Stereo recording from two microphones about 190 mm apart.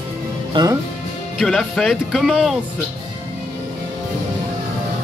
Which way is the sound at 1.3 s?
Centre (ahead or behind).